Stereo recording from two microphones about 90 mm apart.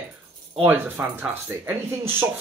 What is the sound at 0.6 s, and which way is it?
Speech, 25° right (ahead or behind).